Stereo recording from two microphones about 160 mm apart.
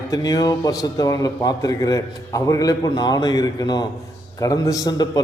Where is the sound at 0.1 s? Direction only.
25° left (ahead or behind).